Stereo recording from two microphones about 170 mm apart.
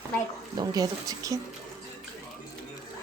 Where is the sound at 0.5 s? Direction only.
25° right (ahead or behind).